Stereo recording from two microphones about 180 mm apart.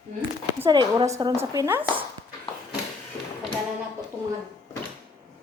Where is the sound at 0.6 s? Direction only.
25° right (ahead or behind).